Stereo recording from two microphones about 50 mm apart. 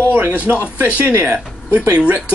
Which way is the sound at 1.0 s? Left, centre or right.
Right.